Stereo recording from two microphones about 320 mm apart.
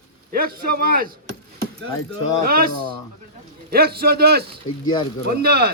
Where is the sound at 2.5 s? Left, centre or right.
Right.